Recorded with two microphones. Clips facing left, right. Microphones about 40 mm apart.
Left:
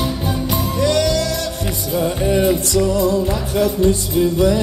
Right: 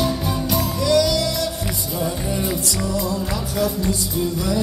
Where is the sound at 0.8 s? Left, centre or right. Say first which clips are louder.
Left 1 dB; left.